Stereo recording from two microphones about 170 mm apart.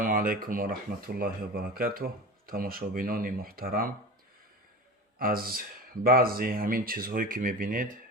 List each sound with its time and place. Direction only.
0.0 s speech: 55° right (ahead or behind)
5.2 s speech: 60° right (ahead or behind)